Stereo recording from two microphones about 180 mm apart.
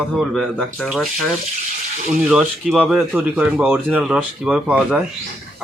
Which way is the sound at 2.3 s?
5° right (ahead or behind).